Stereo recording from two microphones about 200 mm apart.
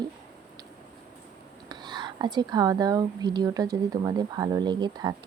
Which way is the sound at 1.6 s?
20° right (ahead or behind).